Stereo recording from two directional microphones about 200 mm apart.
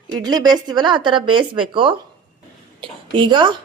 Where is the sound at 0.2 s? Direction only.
20° right (ahead or behind).